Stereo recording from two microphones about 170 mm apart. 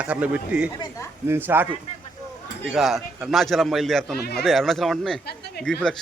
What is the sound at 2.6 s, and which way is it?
A man's voice, centre (ahead or behind).